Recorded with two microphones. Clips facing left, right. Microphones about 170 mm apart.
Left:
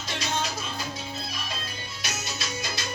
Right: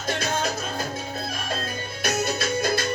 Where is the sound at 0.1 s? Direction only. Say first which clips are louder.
Right 5 dB; 50° right (ahead or behind).